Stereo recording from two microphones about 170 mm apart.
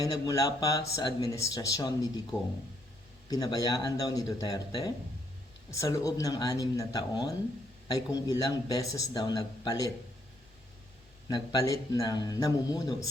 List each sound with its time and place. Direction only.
0.0 s speech: 20° left (ahead or behind)
3.2 s speech: 20° left (ahead or behind)
11.3 s speech: 25° left (ahead or behind)